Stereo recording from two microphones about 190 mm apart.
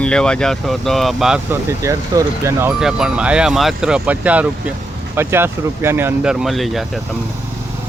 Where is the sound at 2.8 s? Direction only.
5° right (ahead or behind).